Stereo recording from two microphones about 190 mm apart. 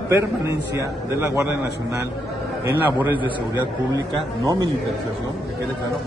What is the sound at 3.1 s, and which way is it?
Speech, 25° left (ahead or behind).